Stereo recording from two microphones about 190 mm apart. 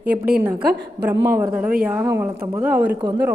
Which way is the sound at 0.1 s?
55° right (ahead or behind).